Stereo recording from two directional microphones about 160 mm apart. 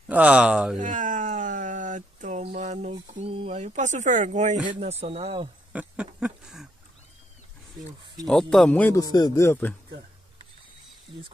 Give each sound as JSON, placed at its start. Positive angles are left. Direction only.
{"t": 0.1, "sound": "speech", "side_deg": -5}
{"t": 0.7, "sound": "speech", "side_deg": -55}
{"t": 5.7, "sound": "a sound", "side_deg": -10}
{"t": 8.3, "sound": "speech", "side_deg": 0}
{"t": 9.1, "sound": "speech", "side_deg": 25}